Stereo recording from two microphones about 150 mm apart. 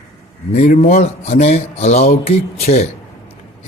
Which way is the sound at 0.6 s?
55° left (ahead or behind).